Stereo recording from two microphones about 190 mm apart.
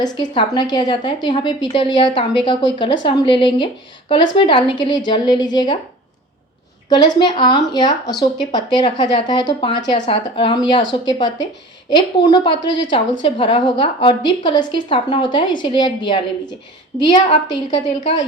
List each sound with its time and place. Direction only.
0.0 s a woman's voice: 20° left (ahead or behind)
6.8 s a woman's voice: 25° left (ahead or behind)
17.1 s a woman's voice: 25° left (ahead or behind)